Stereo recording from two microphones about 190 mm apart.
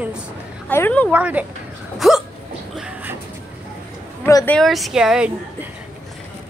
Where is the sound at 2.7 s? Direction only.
5° right (ahead or behind).